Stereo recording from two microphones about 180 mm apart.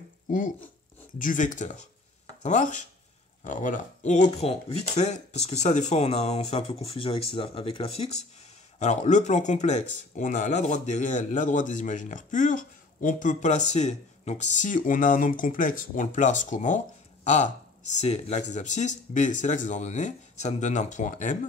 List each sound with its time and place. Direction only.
1.1 s speech: 45° left (ahead or behind)